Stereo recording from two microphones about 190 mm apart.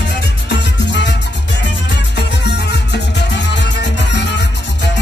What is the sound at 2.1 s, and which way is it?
Music, 65° left (ahead or behind).